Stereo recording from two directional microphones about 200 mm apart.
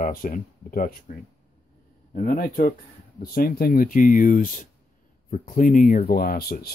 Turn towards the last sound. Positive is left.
turn(degrees=50)  # may be behind; listen again after turning